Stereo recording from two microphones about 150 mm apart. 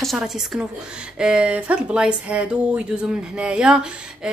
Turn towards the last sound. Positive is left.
turn(degrees=-5)  # may be behind; listen again after turning